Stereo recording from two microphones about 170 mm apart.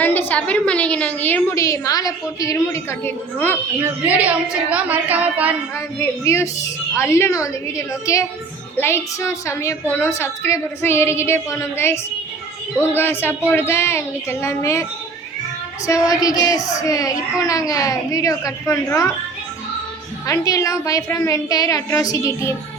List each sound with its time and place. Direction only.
0.0 s a woman's voice: 10° left (ahead or behind)
3.8 s a woman's voice: 10° right (ahead or behind)
5.7 s a woman's voice: 15° left (ahead or behind)
13.0 s a woman's voice: 10° left (ahead or behind)
15.9 s a woman's voice: 20° left (ahead or behind)
20.2 s a woman's voice: 20° left (ahead or behind)